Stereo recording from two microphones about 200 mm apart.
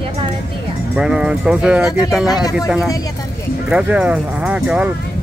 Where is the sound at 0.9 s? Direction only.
5° right (ahead or behind).